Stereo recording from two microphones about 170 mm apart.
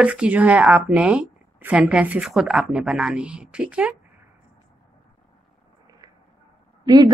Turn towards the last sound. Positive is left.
turn(degrees=-25)  # may be behind; listen again after turning